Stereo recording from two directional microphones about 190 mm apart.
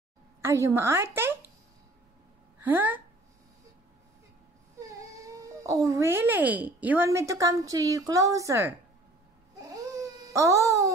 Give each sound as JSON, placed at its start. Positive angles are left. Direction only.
{"t": 0.4, "sound": "a woman's voice", "side_deg": -15}
{"t": 2.6, "sound": "speech", "side_deg": -10}
{"t": 4.7, "sound": "speech", "side_deg": -15}
{"t": 9.6, "sound": "baby cry", "side_deg": -15}